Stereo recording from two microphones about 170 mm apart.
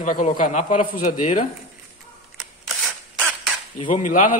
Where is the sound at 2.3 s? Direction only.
5° right (ahead or behind).